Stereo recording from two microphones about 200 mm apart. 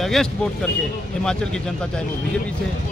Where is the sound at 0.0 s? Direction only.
Centre (ahead or behind).